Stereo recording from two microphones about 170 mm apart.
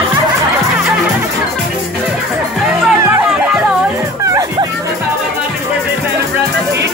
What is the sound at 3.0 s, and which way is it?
Music, 10° right (ahead or behind).